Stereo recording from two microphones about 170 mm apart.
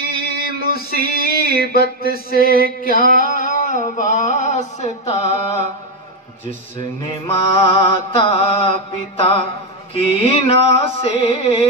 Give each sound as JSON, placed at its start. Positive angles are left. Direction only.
{"t": 0.0, "sound": "male singing", "side_deg": 65}
{"t": 0.4, "sound": "a sound", "side_deg": 65}
{"t": 7.2, "sound": "mantra", "side_deg": 35}